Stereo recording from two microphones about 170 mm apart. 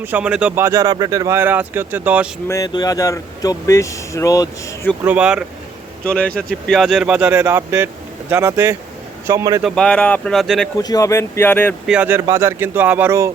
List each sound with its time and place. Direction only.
0.0 s speech: 10° right (ahead or behind)
2.5 s speech: 20° left (ahead or behind)
5.0 s speech: 5° right (ahead or behind)
6.1 s speech: 5° left (ahead or behind); by 9.6 s 20° right (ahead or behind)
9.6 s speech: 5° left (ahead or behind)
10.8 s speech: 20° left (ahead or behind)
11.9 s speech: 10° right (ahead or behind)